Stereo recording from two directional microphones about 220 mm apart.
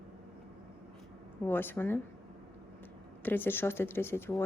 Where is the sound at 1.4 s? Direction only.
10° left (ahead or behind).